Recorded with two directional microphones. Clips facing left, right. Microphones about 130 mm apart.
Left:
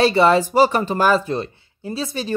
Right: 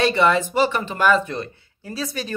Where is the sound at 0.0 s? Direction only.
35° left (ahead or behind).